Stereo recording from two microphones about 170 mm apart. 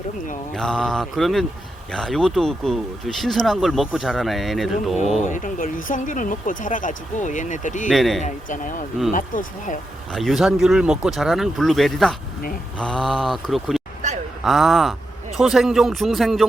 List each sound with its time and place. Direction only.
0.5 s speech: 5° left (ahead or behind)
5.2 s speech: 50° left (ahead or behind)
7.9 s speech: centre (ahead or behind)
8.2 s speech: 50° left (ahead or behind)
10.1 s speech: centre (ahead or behind)